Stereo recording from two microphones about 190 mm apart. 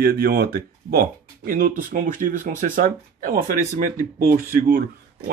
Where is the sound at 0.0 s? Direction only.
55° right (ahead or behind).